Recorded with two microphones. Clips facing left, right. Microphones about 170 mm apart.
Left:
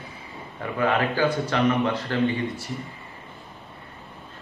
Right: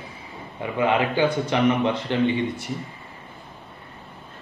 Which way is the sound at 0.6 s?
15° right (ahead or behind).